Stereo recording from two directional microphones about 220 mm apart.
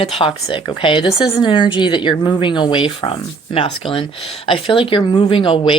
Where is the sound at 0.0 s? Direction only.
25° left (ahead or behind).